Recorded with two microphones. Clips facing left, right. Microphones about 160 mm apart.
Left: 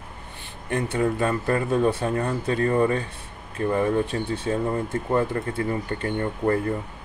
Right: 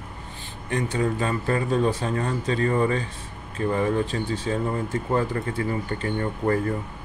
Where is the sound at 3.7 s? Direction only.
60° left (ahead or behind).